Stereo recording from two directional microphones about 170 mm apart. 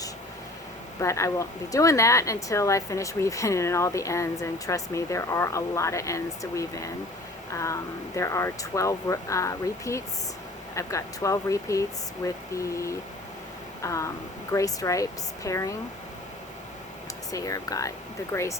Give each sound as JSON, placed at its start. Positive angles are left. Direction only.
{"t": 0.9, "sound": "speech", "side_deg": 15}
{"t": 17.3, "sound": "speech", "side_deg": 20}